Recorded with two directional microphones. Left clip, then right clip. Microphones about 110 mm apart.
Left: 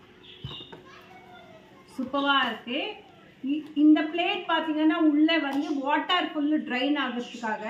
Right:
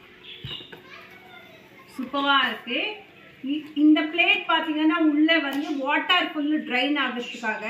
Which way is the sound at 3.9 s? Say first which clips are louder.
Right 7 dB; 20° left (ahead or behind).